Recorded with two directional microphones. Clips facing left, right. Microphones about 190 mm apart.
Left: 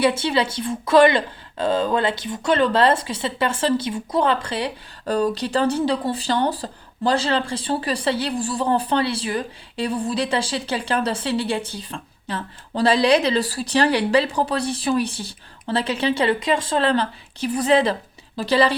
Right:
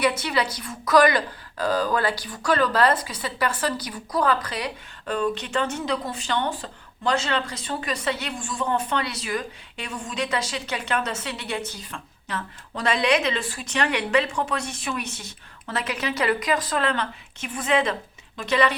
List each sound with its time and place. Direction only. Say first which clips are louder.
0.0 s speech: left 4 dB; 30° left (ahead or behind)